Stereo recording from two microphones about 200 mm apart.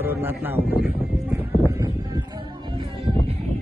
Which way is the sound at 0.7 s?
50° left (ahead or behind).